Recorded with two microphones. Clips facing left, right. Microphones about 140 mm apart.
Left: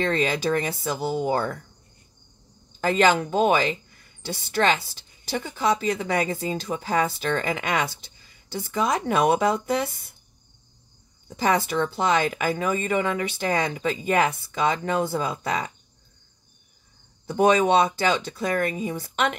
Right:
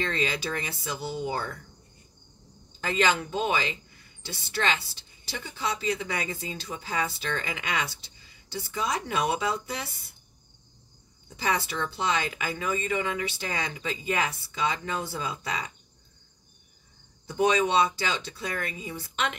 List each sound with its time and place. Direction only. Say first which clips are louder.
0.0 s speech: left 6 dB; 50° left (ahead or behind)
2.8 s speech: left 6 dB; 45° left (ahead or behind)
11.2 s speech: left 6 dB; 45° left (ahead or behind)
17.3 s speech: left 5 dB; 50° left (ahead or behind)